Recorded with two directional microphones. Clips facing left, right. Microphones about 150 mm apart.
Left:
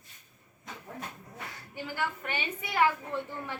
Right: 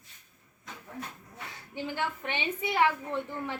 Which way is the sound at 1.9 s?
20° right (ahead or behind).